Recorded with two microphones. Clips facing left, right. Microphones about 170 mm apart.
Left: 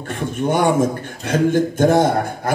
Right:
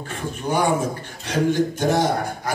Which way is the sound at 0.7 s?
50° left (ahead or behind).